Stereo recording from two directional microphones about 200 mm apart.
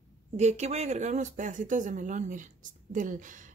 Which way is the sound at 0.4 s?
35° right (ahead or behind).